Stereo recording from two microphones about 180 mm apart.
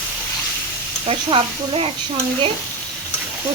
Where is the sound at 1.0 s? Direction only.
30° right (ahead or behind).